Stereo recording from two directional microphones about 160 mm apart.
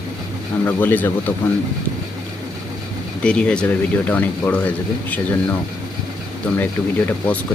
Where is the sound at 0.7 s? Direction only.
10° left (ahead or behind).